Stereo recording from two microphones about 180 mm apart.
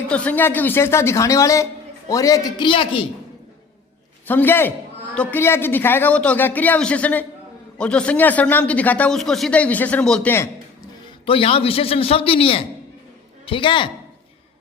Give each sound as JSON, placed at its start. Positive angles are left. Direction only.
{"t": 0.1, "sound": "a man's voice", "side_deg": 5}
{"t": 4.3, "sound": "speech", "side_deg": 10}
{"t": 11.0, "sound": "a man's voice", "side_deg": 30}